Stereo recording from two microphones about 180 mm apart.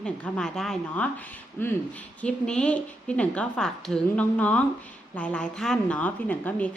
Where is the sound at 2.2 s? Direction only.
5° left (ahead or behind).